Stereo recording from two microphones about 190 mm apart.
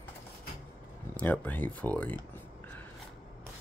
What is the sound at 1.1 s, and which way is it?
Speech, 10° left (ahead or behind).